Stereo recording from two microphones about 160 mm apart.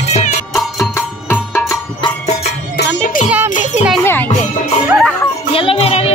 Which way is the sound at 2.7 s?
70° left (ahead or behind).